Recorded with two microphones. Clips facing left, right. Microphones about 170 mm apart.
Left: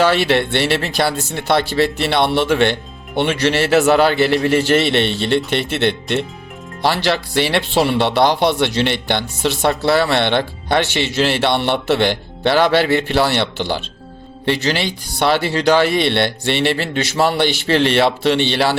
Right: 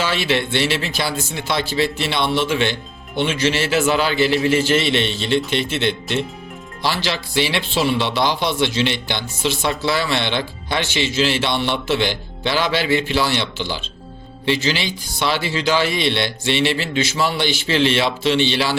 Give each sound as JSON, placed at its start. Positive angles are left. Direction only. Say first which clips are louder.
{"t": 0.0, "sound": "speech", "louder": "left 6 dB", "side_deg": 60}